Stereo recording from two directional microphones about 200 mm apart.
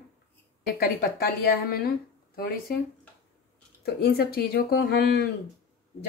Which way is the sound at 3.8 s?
50° left (ahead or behind).